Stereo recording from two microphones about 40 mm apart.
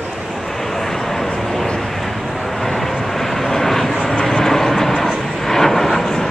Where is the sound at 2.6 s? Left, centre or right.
Centre.